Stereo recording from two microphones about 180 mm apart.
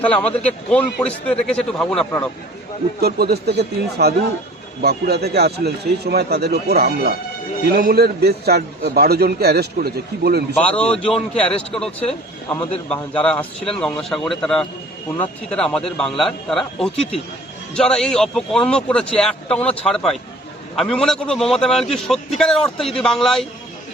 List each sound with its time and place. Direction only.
0.0 s a man's voice: 10° left (ahead or behind)
3.0 s a man's voice: 60° right (ahead or behind)
10.6 s a man's voice: 10° left (ahead or behind)